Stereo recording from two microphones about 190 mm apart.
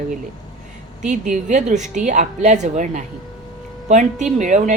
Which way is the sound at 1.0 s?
40° right (ahead or behind).